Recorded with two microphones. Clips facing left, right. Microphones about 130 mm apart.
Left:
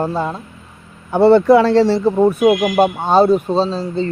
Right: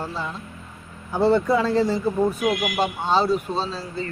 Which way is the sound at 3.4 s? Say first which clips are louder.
Left 10 dB; 30° left (ahead or behind).